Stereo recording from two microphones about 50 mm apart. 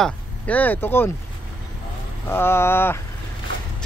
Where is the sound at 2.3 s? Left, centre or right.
Left.